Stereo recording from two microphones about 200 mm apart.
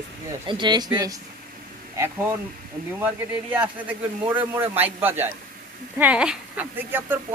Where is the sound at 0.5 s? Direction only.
20° right (ahead or behind).